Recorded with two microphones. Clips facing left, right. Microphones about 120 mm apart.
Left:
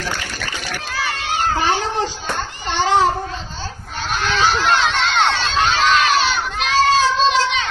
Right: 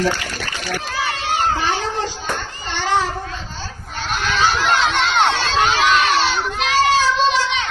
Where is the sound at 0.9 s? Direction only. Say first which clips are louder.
Even; 25° right (ahead or behind).